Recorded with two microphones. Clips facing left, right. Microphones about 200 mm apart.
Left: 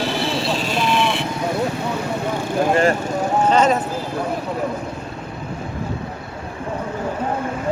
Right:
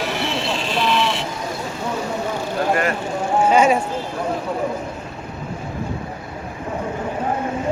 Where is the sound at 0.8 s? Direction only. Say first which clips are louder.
Right 1 dB; 50° left (ahead or behind).